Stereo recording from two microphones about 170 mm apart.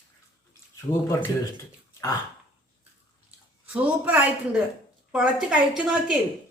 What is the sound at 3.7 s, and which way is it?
A woman's voice, 10° right (ahead or behind).